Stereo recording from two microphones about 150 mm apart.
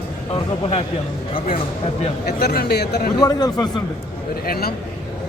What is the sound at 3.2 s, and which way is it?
Speech, 25° left (ahead or behind).